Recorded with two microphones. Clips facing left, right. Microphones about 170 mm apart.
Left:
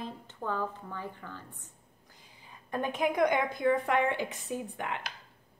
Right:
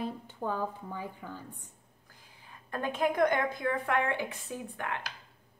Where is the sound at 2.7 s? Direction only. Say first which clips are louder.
Even; 15° left (ahead or behind).